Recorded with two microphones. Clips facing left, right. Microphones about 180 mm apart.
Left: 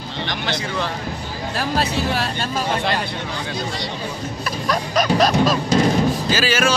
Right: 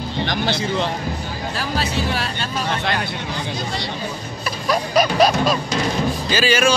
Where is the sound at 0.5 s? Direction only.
25° right (ahead or behind).